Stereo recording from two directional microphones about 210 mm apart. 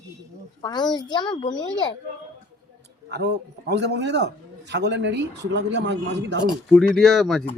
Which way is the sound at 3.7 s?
55° right (ahead or behind).